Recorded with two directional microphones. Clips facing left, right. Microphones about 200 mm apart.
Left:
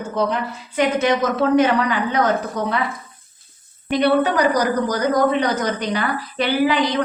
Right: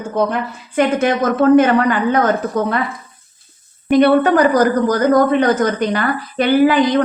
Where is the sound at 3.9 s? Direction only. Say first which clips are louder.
Right 6 dB; 50° right (ahead or behind).